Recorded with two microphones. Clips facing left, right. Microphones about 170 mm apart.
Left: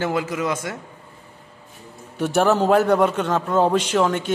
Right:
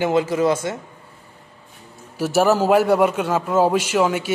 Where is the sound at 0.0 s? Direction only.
25° right (ahead or behind).